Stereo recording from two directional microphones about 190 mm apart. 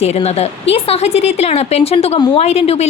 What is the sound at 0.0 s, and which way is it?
A woman's voice, 35° left (ahead or behind).